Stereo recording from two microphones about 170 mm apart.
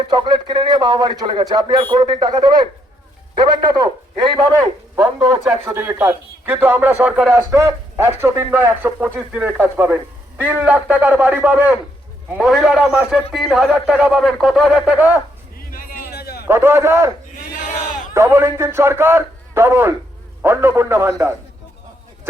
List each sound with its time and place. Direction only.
0.1 s a man's voice: 30° right (ahead or behind)
5.5 s speech: 10° right (ahead or behind)
15.5 s a sound: 55° left (ahead or behind)
16.5 s speech: 15° right (ahead or behind)
17.5 s speech: 50° left (ahead or behind)
18.1 s speech: 15° right (ahead or behind)